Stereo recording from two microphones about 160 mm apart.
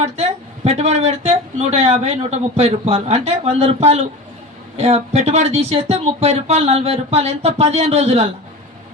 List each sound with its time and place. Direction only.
0.0 s speech: 40° right (ahead or behind)